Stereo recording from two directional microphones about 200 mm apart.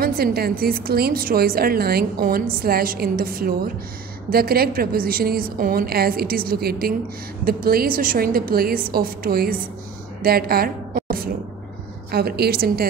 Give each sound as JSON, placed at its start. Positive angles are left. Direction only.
{"t": 0.0, "sound": "a woman's voice", "side_deg": -50}